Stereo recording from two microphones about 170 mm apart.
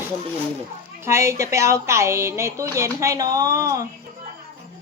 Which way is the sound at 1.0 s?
15° right (ahead or behind).